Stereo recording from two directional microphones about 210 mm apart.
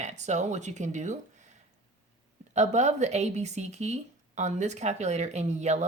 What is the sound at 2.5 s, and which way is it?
Speech, 35° right (ahead or behind).